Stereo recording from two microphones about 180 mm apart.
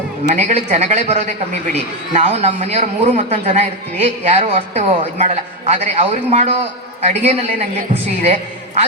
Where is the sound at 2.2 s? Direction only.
35° right (ahead or behind).